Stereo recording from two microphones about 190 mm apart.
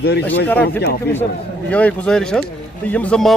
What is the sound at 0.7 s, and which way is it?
Speech, 55° left (ahead or behind).